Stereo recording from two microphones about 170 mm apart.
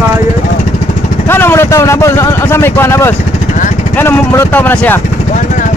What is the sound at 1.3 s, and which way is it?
Speech, 10° left (ahead or behind).